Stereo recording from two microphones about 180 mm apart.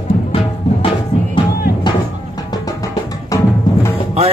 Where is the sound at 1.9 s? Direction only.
25° left (ahead or behind).